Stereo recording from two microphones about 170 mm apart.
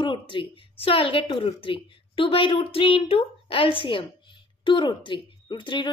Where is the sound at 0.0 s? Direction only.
30° left (ahead or behind).